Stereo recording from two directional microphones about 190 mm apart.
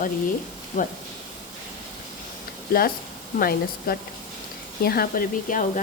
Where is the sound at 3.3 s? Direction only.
50° left (ahead or behind).